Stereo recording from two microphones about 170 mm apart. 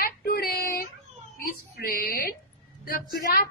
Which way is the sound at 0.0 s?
65° left (ahead or behind).